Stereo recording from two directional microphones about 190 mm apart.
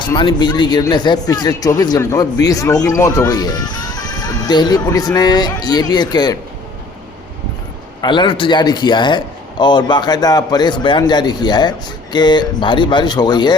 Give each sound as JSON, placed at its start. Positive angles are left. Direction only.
{"t": 0.0, "sound": "speech", "side_deg": 25}
{"t": 8.0, "sound": "speech", "side_deg": 25}